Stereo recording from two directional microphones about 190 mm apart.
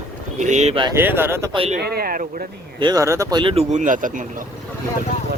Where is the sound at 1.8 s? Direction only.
55° right (ahead or behind).